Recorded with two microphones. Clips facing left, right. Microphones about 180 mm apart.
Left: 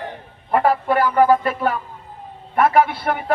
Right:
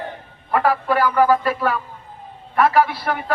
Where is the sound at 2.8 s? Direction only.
50° left (ahead or behind).